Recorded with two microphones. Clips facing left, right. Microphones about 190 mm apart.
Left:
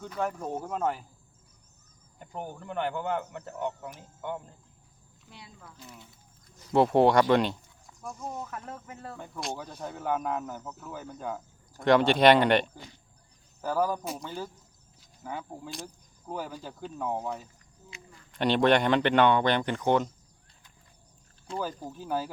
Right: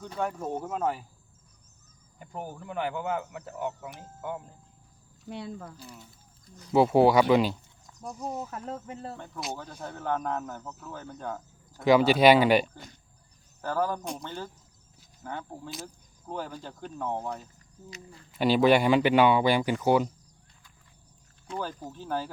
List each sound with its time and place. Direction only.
0.2 s speech: centre (ahead or behind)
2.1 s speech: 5° right (ahead or behind)
5.3 s speech: 65° right (ahead or behind)
5.6 s speech: 40° right (ahead or behind)
6.7 s speech: 5° right (ahead or behind)
8.4 s speech: 25° right (ahead or behind)
9.1 s speech: 10° left (ahead or behind)
11.8 s speech: 5° right (ahead or behind)
13.6 s speech: 10° left (ahead or behind)
18.3 s speech: 5° right (ahead or behind)
21.8 s speech: 10° left (ahead or behind)